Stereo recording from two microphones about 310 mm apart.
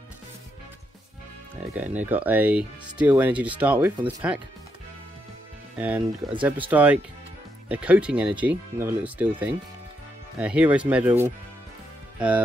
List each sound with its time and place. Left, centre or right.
1.6 s speech: centre
5.8 s speech: centre